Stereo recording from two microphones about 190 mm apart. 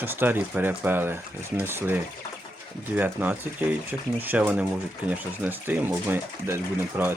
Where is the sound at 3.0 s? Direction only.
10° right (ahead or behind).